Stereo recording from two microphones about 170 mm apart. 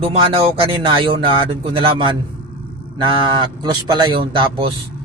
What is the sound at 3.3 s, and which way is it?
A man's voice, 25° right (ahead or behind).